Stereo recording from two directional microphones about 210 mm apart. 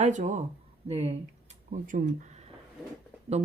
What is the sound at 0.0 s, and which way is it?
Speech, 35° right (ahead or behind).